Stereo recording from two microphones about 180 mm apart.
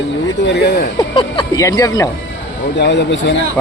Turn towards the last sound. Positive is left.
turn(degrees=80)